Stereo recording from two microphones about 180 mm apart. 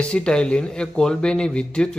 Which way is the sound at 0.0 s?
5° left (ahead or behind).